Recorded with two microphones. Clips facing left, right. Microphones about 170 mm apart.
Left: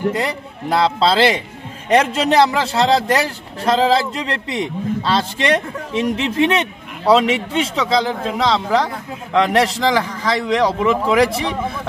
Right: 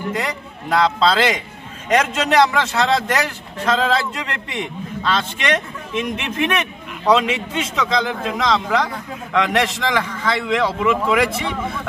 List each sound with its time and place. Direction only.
0.1 s a man's voice: 30° left (ahead or behind)